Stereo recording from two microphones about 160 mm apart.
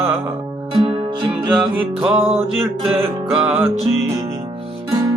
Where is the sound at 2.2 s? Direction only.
40° right (ahead or behind).